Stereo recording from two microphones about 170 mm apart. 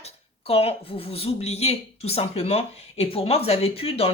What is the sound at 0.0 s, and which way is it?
Speech, 35° left (ahead or behind).